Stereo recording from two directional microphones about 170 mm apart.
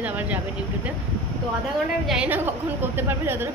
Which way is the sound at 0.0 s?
10° right (ahead or behind).